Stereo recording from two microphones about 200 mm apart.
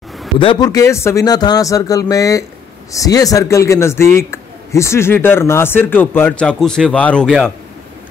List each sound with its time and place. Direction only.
0.4 s speech: 20° left (ahead or behind); by 7.5 s 5° left (ahead or behind)